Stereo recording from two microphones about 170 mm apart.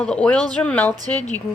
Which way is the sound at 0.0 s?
5° left (ahead or behind).